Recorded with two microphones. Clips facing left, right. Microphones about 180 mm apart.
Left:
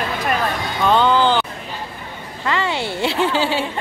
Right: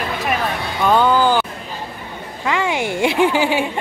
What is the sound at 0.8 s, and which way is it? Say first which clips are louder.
Music: right 1 dB; 10° right (ahead or behind).